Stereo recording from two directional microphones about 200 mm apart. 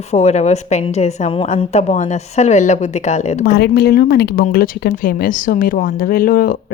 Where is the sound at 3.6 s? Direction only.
55° left (ahead or behind).